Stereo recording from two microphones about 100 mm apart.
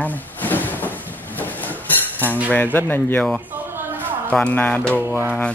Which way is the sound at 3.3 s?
15° right (ahead or behind).